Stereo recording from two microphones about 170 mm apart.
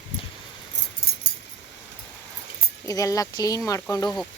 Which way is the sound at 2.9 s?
20° left (ahead or behind).